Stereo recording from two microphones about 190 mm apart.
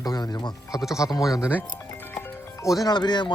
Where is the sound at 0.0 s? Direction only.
20° left (ahead or behind).